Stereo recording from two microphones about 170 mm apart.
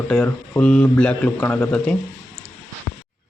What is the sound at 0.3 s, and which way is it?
A man's voice, 10° left (ahead or behind).